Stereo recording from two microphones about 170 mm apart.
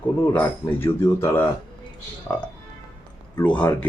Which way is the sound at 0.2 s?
15° left (ahead or behind).